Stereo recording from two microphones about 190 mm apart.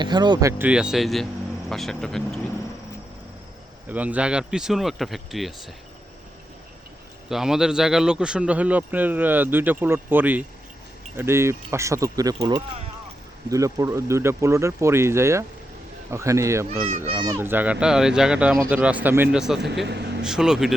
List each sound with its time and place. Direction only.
0.0 s speech: 25° right (ahead or behind)
0.7 s speech: 5° right (ahead or behind)
3.8 s speech: 10° right (ahead or behind)
7.3 s speech: centre (ahead or behind)